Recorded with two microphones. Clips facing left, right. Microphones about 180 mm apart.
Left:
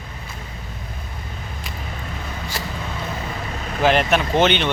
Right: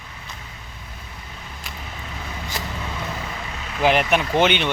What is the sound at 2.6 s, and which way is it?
Vehicle, 20° right (ahead or behind).